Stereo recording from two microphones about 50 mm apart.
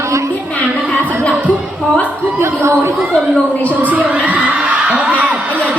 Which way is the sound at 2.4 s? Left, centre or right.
Right.